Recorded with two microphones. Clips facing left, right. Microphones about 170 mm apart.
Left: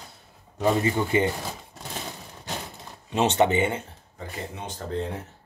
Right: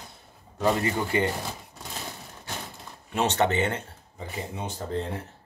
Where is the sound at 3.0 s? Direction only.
15° left (ahead or behind).